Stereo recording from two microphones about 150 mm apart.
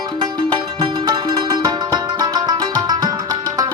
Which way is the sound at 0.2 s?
25° right (ahead or behind).